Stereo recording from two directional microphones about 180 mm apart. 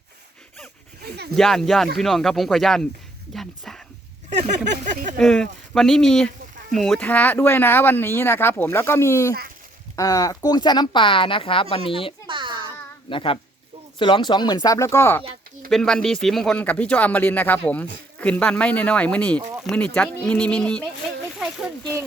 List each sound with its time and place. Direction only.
1.4 s speech: centre (ahead or behind)
4.3 s speech: 40° right (ahead or behind)
5.1 s speech: 5° left (ahead or behind); by 12.1 s 30° left (ahead or behind)
12.3 s a sound: 25° right (ahead or behind)
13.1 s speech: 30° left (ahead or behind)
15.7 s speech: 5° left (ahead or behind)
21.3 s a sound: centre (ahead or behind)